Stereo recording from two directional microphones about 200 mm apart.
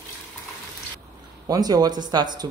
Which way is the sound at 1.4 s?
20° right (ahead or behind).